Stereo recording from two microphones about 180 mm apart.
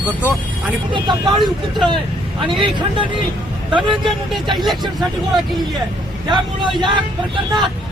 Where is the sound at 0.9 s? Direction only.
25° right (ahead or behind).